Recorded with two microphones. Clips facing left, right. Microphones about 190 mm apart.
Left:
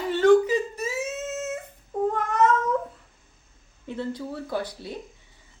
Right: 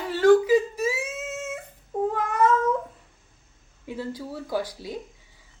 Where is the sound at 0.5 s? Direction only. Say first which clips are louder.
Right 5 dB; 90° right.